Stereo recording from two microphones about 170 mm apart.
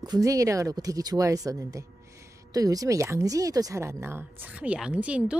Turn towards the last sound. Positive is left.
turn(degrees=-5)  # may be behind; listen again after turning